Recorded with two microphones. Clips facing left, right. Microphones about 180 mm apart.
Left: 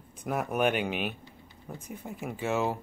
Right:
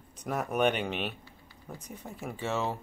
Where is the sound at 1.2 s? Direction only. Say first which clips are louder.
Left 2 dB; 20° left (ahead or behind).